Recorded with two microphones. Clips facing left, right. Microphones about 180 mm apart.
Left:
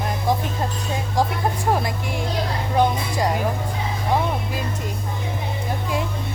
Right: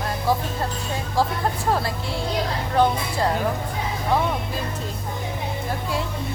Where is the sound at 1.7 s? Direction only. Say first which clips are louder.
Left 1 dB; 15° left (ahead or behind).